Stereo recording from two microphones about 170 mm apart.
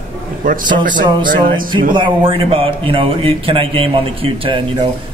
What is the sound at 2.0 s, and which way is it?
Speech, 30° right (ahead or behind).